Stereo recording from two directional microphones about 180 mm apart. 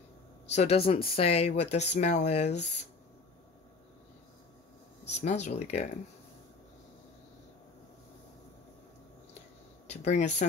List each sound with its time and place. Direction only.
0.5 s speech: 35° left (ahead or behind)
5.2 s speech: 40° left (ahead or behind)
9.8 s speech: 40° left (ahead or behind)